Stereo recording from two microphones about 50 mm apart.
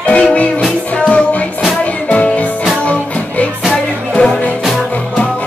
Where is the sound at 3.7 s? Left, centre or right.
Centre.